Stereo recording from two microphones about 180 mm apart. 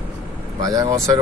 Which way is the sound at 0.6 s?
20° right (ahead or behind).